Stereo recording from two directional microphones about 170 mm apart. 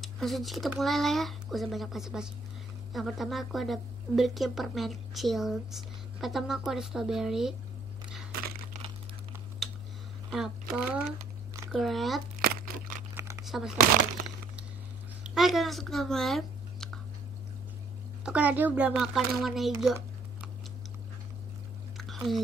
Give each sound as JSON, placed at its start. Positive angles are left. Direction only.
{"t": 0.0, "sound": "a woman's voice", "side_deg": 0}
{"t": 9.6, "sound": "typing", "side_deg": 0}
{"t": 10.3, "sound": "a woman's voice", "side_deg": -5}
{"t": 12.4, "sound": "crumpling", "side_deg": -60}
{"t": 13.1, "sound": "crumpling", "side_deg": -15}
{"t": 13.5, "sound": "speech", "side_deg": -5}
{"t": 15.2, "sound": "speech", "side_deg": 0}
{"t": 18.2, "sound": "speech", "side_deg": -10}
{"t": 21.9, "sound": "chewing", "side_deg": 0}